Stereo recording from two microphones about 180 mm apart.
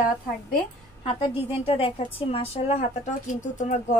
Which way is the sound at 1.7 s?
30° left (ahead or behind).